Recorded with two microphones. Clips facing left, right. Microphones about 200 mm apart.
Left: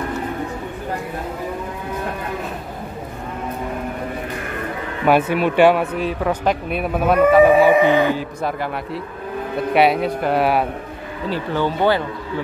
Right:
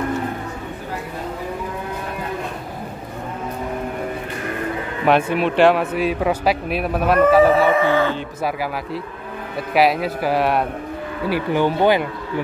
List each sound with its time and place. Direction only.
5.0 s speech: centre (ahead or behind)
5.9 s speech: 10° right (ahead or behind)
7.4 s livestock: 15° left (ahead or behind)
9.8 s speech: centre (ahead or behind)
11.2 s speech: 15° right (ahead or behind)